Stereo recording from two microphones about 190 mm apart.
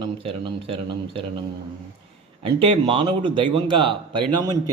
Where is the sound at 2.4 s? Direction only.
25° right (ahead or behind).